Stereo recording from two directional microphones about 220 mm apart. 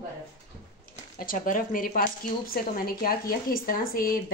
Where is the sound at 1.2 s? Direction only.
40° left (ahead or behind).